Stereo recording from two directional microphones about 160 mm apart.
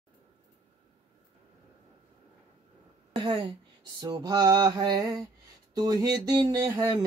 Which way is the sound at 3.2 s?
30° right (ahead or behind).